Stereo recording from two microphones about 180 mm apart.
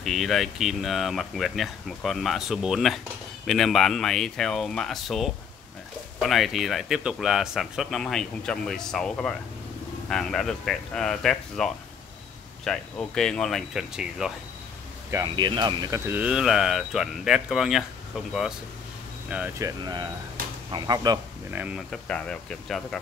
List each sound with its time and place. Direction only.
0.0 s speech: centre (ahead or behind)
15.0 s speech: 20° right (ahead or behind)
16.1 s speech: 5° right (ahead or behind)
19.2 s speech: 5° right (ahead or behind)
19.6 s speech: 25° right (ahead or behind)
21.5 s speech: 10° right (ahead or behind)
21.9 s speech: 5° left (ahead or behind)